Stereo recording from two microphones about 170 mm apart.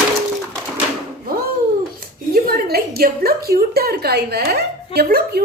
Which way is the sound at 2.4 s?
65° right (ahead or behind).